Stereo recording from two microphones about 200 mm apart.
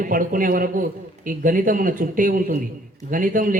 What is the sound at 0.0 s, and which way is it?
Speech, 45° right (ahead or behind).